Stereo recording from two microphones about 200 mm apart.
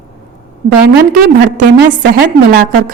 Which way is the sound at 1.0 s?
45° right (ahead or behind).